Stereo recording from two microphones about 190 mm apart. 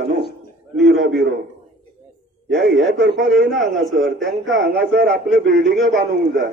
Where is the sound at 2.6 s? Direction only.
65° right (ahead or behind).